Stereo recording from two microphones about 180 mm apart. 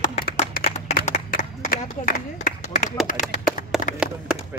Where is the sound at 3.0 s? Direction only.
45° left (ahead or behind).